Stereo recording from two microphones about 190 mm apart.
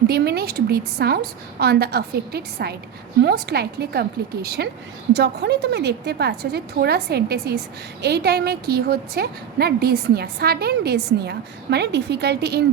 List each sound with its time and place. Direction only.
0.1 s a woman's voice: 55° right (ahead or behind)